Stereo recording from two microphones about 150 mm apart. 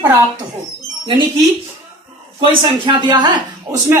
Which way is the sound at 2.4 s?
35° right (ahead or behind).